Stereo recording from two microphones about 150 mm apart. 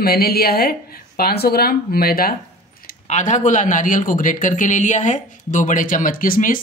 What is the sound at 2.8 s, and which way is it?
Speech, 55° left (ahead or behind).